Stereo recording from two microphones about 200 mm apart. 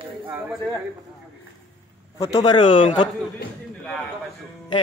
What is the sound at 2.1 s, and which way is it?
Speech, 20° left (ahead or behind).